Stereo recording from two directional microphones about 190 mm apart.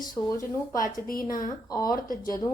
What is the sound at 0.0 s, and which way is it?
Speech, 20° left (ahead or behind).